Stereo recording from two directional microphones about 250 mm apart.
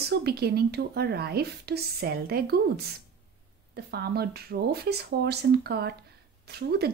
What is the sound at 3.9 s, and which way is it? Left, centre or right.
Speech, right.